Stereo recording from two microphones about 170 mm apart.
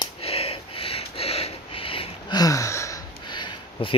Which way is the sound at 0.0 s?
35° left (ahead or behind).